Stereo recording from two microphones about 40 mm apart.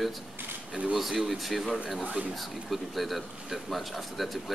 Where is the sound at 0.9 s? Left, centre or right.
Centre.